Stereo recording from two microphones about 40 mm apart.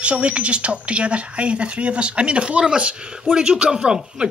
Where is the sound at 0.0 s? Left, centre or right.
Right.